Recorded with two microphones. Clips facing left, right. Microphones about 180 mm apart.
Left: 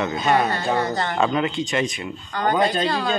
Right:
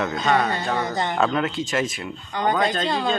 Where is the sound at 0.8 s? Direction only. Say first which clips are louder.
Left 1 dB; 15° right (ahead or behind).